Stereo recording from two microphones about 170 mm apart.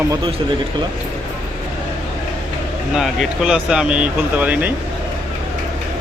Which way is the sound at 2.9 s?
Centre (ahead or behind).